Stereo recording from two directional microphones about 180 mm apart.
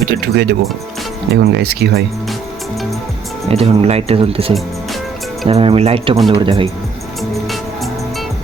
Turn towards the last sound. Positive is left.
turn(degrees=0)  # may be behind; listen again after turning